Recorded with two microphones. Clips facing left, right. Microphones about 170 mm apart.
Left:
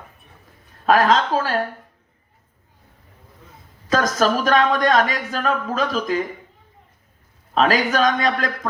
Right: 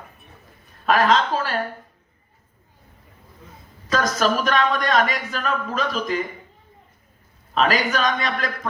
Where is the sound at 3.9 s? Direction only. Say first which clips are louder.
Left 2 dB; 45° left (ahead or behind).